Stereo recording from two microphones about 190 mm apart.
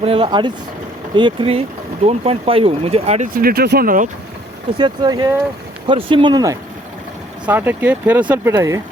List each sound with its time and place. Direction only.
0.0 s speech: 30° right (ahead or behind)
3.3 s speech: 55° right (ahead or behind)
4.8 s speech: 20° right (ahead or behind)